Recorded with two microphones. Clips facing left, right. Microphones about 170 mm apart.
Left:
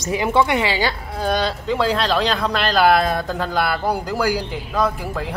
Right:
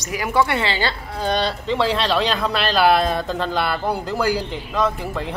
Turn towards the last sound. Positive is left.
turn(degrees=5)  # may be behind; listen again after turning